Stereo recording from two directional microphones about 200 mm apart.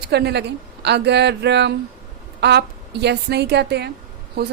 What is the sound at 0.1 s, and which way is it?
A woman's voice, 55° right (ahead or behind).